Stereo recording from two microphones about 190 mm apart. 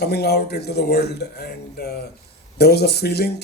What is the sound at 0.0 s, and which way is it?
Speech, 60° left (ahead or behind).